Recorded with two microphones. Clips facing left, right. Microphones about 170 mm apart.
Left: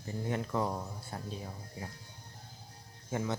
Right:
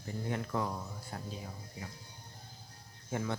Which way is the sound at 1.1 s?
30° left (ahead or behind).